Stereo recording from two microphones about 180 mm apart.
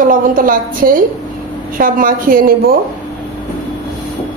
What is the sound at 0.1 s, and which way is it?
A woman's voice, 50° right (ahead or behind).